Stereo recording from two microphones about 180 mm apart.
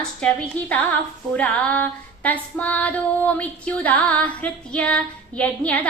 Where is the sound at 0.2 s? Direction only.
5° left (ahead or behind).